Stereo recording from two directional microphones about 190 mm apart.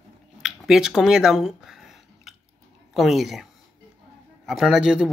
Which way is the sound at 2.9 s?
Centre (ahead or behind).